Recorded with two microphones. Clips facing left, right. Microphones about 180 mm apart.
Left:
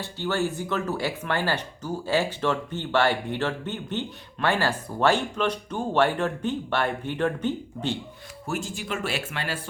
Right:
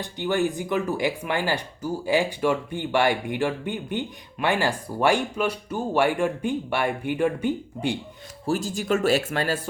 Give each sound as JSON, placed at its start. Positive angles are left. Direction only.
{"t": 0.0, "sound": "speech", "side_deg": -15}
{"t": 8.4, "sound": "speech", "side_deg": -35}